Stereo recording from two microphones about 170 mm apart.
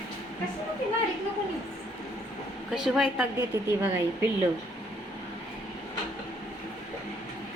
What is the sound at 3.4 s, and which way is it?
Speech, 15° right (ahead or behind).